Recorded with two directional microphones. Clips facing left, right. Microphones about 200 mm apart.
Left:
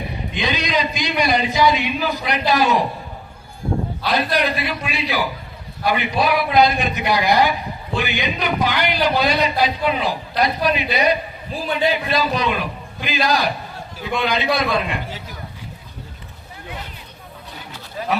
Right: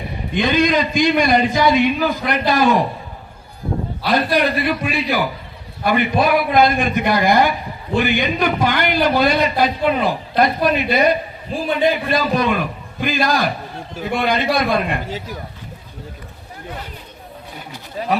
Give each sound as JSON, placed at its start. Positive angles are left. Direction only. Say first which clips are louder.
{"t": 0.3, "sound": "a man's voice", "louder": "right 6 dB", "side_deg": -50}
{"t": 4.0, "sound": "a man's voice", "louder": "right 4 dB", "side_deg": -50}